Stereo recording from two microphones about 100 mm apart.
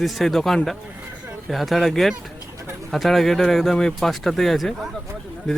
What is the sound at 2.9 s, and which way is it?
A man's voice, centre (ahead or behind).